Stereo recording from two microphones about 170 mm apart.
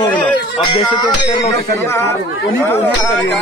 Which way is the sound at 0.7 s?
25° left (ahead or behind).